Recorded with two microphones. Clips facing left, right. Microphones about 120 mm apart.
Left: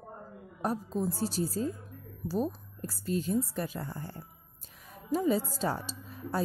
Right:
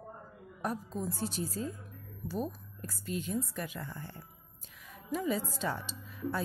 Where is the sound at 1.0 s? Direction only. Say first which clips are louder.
Left 6 dB; 35° left (ahead or behind).